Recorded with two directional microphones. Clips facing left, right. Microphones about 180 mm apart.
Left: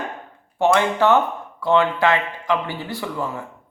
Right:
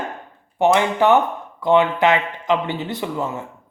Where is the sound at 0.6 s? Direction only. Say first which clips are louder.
Right 1 dB; 15° right (ahead or behind).